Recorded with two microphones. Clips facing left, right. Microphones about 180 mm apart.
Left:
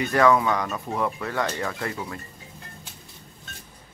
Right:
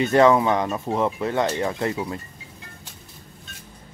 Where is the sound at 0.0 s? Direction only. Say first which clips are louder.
Right 3 dB; 25° right (ahead or behind).